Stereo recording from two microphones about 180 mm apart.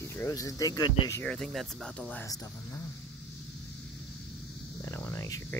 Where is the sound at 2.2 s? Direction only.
20° left (ahead or behind).